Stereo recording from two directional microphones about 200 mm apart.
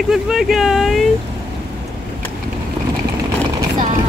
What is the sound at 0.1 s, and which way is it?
Speech, centre (ahead or behind).